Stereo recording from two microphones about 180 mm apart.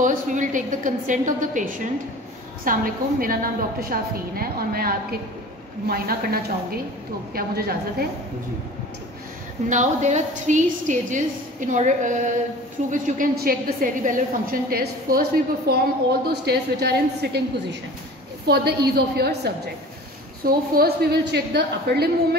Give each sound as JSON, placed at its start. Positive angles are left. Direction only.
{"t": 0.0, "sound": "a woman's voice", "side_deg": -45}
{"t": 9.7, "sound": "a woman's voice", "side_deg": -40}